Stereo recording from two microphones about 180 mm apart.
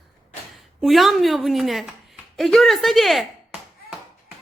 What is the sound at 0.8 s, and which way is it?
A woman's voice, centre (ahead or behind).